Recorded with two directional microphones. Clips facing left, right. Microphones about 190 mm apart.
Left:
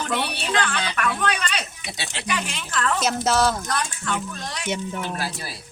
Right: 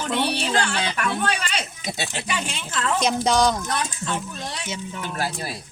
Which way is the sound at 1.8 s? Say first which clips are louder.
Right 5 dB; 45° right (ahead or behind).